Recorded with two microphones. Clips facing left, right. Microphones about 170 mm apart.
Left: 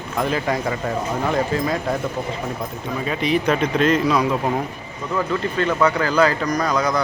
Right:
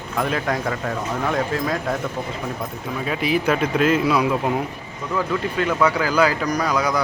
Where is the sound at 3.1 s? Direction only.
5° right (ahead or behind).